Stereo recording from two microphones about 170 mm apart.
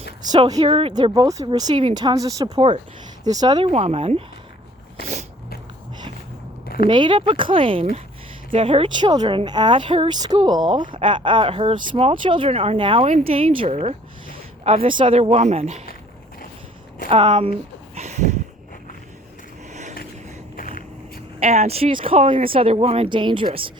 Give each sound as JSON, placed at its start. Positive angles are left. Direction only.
{"t": 0.2, "sound": "speech", "side_deg": -25}
{"t": 2.6, "sound": "speech", "side_deg": -35}
{"t": 3.2, "sound": "speech", "side_deg": -25}
{"t": 3.7, "sound": "speech", "side_deg": -35}
{"t": 6.8, "sound": "speech", "side_deg": -25}
{"t": 17.1, "sound": "speech", "side_deg": -35}
{"t": 20.6, "sound": "vehicle", "side_deg": 55}
{"t": 21.3, "sound": "speech", "side_deg": -40}